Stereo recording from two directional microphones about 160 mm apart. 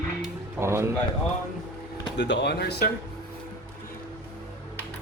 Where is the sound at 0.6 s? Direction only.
15° right (ahead or behind).